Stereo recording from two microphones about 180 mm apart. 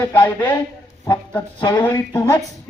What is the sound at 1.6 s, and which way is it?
Speech, 25° left (ahead or behind).